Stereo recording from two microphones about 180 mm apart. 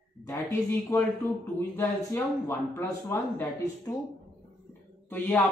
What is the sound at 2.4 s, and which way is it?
Speech, 15° left (ahead or behind).